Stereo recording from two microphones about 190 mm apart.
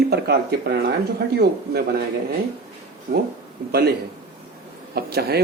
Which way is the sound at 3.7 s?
55° right (ahead or behind).